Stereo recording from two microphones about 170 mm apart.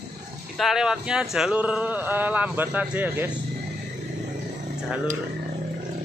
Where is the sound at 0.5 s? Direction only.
Centre (ahead or behind).